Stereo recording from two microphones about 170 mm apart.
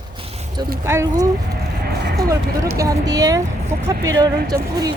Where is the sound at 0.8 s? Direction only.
15° right (ahead or behind).